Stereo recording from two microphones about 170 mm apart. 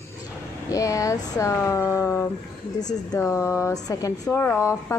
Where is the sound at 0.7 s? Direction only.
20° left (ahead or behind).